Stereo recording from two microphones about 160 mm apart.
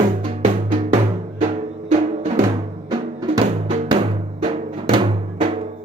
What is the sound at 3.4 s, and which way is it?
Drum, 40° right (ahead or behind).